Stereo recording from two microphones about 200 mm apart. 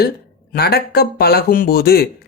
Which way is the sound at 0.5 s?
50° left (ahead or behind).